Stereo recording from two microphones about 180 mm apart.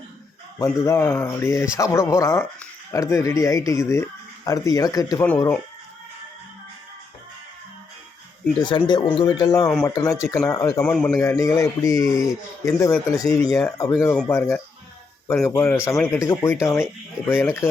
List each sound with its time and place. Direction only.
0.6 s speech: 15° left (ahead or behind)
5.2 s speech: 10° left (ahead or behind)
8.6 s speech: 25° left (ahead or behind)